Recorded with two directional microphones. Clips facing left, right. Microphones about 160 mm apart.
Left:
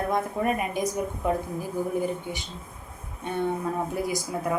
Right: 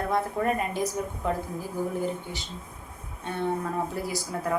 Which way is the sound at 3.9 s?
15° left (ahead or behind).